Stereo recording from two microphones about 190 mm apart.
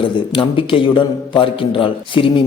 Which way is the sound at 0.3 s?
30° left (ahead or behind).